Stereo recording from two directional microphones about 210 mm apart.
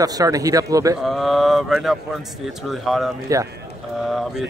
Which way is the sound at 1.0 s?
Centre (ahead or behind).